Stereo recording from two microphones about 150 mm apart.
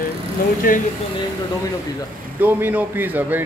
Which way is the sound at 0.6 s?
70° left (ahead or behind).